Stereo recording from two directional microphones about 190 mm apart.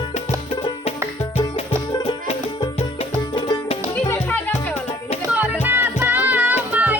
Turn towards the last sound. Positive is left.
turn(degrees=-10)  # may be behind; listen again after turning